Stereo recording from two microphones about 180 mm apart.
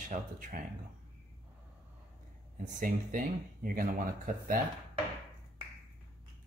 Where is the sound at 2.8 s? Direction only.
50° right (ahead or behind).